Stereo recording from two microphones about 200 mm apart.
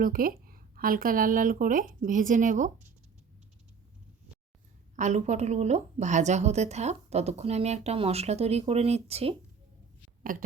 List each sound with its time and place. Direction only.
0.0 s a woman's voice: 45° right (ahead or behind)
4.9 s a woman's voice: 35° right (ahead or behind)
10.3 s a woman's voice: 45° right (ahead or behind)